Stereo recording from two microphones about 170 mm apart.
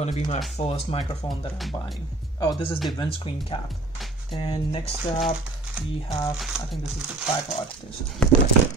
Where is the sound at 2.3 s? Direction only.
25° left (ahead or behind).